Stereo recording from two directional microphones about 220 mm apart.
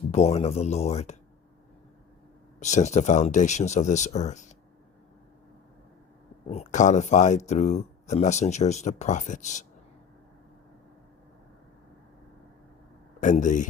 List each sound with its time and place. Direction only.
0.1 s speech: 30° left (ahead or behind)
2.6 s speech: 30° left (ahead or behind)
6.5 s speech: 30° left (ahead or behind)
13.1 s speech: 35° left (ahead or behind)